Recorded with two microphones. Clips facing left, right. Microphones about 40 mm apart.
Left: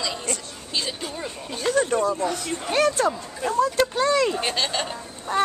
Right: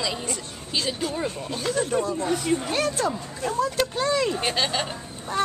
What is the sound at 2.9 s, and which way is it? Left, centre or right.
Speech, centre.